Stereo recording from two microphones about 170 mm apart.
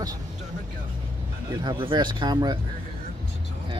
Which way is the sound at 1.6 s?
30° right (ahead or behind).